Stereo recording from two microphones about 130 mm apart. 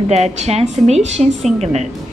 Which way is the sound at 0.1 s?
60° right (ahead or behind).